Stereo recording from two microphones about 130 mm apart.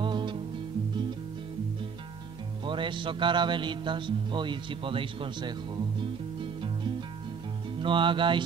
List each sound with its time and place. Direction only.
0.0 s music: 35° right (ahead or behind)
2.6 s a man's voice: 40° right (ahead or behind)
7.8 s a man's voice: 40° right (ahead or behind)